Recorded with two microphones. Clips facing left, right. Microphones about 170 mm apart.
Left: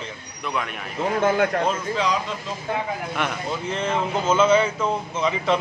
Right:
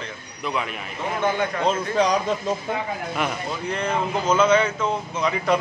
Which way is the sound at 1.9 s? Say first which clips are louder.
Right 6 dB; 45° right (ahead or behind).